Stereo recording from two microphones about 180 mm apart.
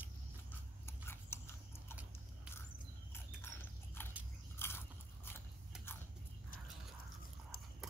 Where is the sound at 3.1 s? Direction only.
10° left (ahead or behind).